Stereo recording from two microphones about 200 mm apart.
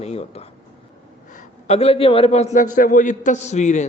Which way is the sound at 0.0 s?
30° left (ahead or behind).